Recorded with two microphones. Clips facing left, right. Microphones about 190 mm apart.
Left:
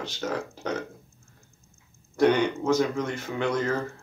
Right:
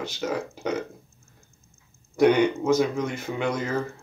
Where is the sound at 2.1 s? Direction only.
10° right (ahead or behind).